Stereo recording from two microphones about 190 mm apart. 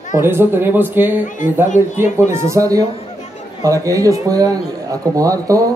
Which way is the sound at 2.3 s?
15° right (ahead or behind).